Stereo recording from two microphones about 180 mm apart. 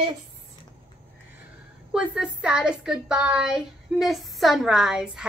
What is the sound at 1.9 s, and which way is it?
A woman's voice, 5° right (ahead or behind).